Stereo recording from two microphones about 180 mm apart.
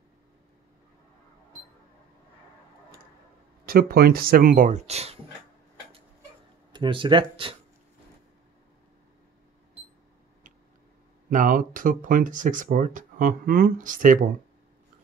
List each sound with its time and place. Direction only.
3.6 s speech: 55° right (ahead or behind); by 5.2 s 35° right (ahead or behind)
6.7 s speech: 25° right (ahead or behind)
11.2 s speech: 50° right (ahead or behind)